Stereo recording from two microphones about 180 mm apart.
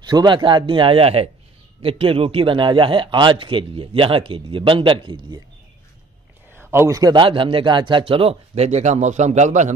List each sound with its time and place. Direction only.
0.0 s a man's voice: 25° right (ahead or behind)
6.7 s a man's voice: 15° right (ahead or behind); by 9.8 s 40° right (ahead or behind)